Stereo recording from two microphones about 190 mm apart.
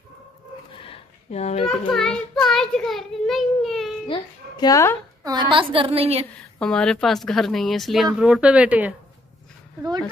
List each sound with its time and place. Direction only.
0.8 s a sound: 35° left (ahead or behind)
1.9 s a child's voice: 5° left (ahead or behind)
4.1 s speech: 20° left (ahead or behind)
5.2 s a woman's voice: 20° right (ahead or behind)
6.6 s speech: 5° left (ahead or behind)